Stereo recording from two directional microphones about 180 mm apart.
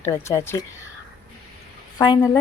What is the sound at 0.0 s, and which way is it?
Speech, 15° left (ahead or behind).